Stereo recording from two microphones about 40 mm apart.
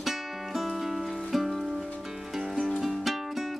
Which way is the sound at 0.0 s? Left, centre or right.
Centre.